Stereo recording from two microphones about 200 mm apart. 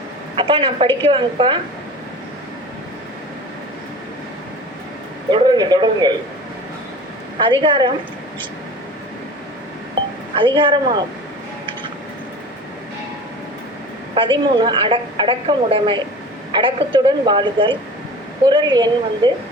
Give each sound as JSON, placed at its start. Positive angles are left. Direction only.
{"t": 0.3, "sound": "a woman's voice", "side_deg": -25}
{"t": 5.3, "sound": "speech", "side_deg": -20}
{"t": 7.3, "sound": "a woman's voice", "side_deg": -25}
{"t": 10.3, "sound": "a woman's voice", "side_deg": -25}
{"t": 14.2, "sound": "a woman's voice", "side_deg": -25}